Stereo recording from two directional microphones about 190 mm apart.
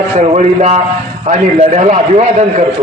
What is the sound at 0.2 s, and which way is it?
A man's voice, 40° right (ahead or behind).